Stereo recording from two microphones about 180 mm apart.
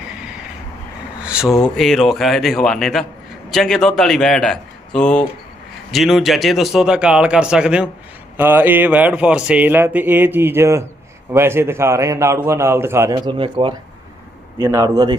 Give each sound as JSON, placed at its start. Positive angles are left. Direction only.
{"t": 1.2, "sound": "a man's voice", "side_deg": -5}
{"t": 13.3, "sound": "speech", "side_deg": -30}